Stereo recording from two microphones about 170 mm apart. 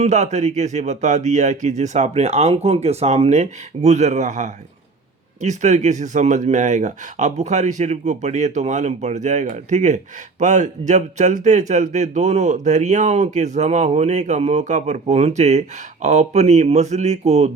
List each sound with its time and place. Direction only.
0.0 s speech: 40° right (ahead or behind)